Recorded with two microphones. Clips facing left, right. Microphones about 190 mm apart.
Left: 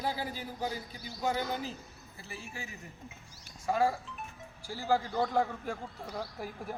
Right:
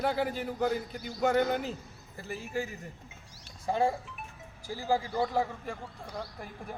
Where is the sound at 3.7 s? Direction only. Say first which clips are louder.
Right 1 dB; 30° right (ahead or behind).